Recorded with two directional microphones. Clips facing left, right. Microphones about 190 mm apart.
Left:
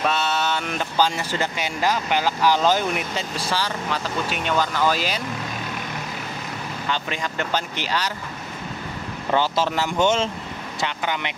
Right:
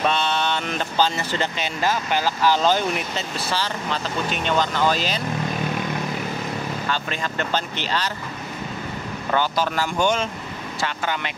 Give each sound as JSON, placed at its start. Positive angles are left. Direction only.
{"t": 0.0, "sound": "speech", "side_deg": 5}
{"t": 6.9, "sound": "speech", "side_deg": 15}
{"t": 9.3, "sound": "speech", "side_deg": 25}